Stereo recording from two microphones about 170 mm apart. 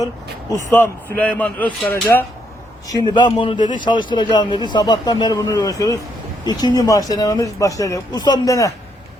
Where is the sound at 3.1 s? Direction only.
25° left (ahead or behind).